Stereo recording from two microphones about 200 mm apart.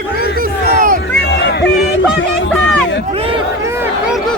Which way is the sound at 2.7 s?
65° left (ahead or behind).